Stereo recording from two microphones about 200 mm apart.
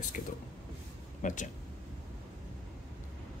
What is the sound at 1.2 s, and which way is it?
Speech, 40° left (ahead or behind).